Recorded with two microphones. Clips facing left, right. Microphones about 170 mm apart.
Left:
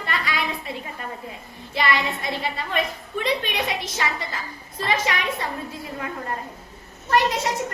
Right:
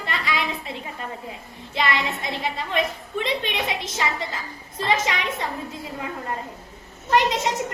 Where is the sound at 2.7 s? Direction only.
20° right (ahead or behind).